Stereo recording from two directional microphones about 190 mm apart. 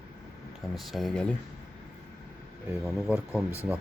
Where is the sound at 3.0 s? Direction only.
Centre (ahead or behind).